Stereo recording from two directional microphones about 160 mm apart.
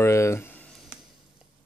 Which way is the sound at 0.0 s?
15° left (ahead or behind).